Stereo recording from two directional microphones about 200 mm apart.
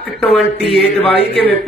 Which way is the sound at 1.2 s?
55° left (ahead or behind).